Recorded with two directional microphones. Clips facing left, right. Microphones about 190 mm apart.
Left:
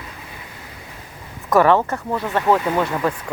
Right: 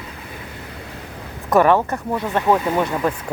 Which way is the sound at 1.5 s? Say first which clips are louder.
Even; 15° right (ahead or behind).